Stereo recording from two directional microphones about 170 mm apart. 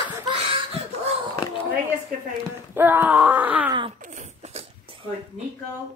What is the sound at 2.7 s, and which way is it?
Wail, 10° right (ahead or behind).